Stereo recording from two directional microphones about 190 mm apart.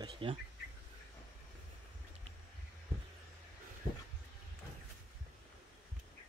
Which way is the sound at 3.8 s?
30° left (ahead or behind).